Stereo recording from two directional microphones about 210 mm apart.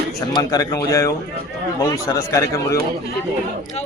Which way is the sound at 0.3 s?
15° left (ahead or behind).